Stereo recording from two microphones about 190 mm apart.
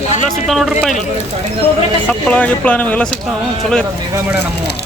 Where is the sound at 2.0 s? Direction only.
5° left (ahead or behind).